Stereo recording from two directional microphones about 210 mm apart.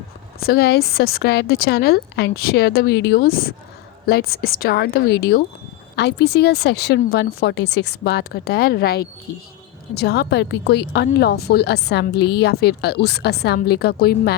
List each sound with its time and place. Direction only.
0.3 s speech: 45° left (ahead or behind)